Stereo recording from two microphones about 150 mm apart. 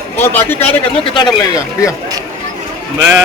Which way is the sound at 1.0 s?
30° left (ahead or behind).